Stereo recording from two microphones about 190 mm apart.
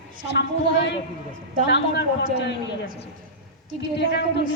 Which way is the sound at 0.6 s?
65° left (ahead or behind).